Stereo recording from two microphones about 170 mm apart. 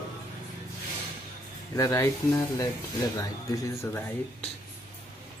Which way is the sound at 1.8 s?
20° left (ahead or behind).